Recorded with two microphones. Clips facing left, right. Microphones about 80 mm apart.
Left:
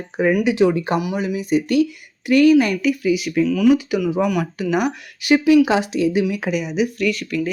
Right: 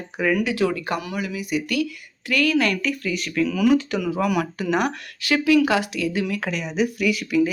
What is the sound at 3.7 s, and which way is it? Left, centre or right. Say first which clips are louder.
Speech: left 3 dB; centre.